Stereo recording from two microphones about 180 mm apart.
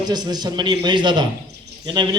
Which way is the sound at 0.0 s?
25° right (ahead or behind).